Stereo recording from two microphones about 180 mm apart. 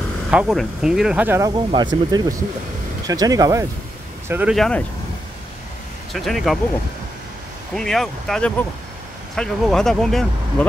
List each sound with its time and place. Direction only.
0.3 s speech: 5° right (ahead or behind)
1.5 s speech: 25° right (ahead or behind)
4.3 s speech: 10° right (ahead or behind)
4.6 s speech: 5° left (ahead or behind)
6.1 s speech: centre (ahead or behind)
7.7 s speech: centre (ahead or behind)